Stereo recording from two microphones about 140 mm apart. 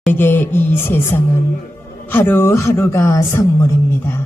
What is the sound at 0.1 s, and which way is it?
Speech, 15° left (ahead or behind).